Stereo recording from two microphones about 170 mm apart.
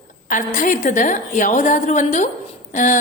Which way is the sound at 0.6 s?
50° left (ahead or behind).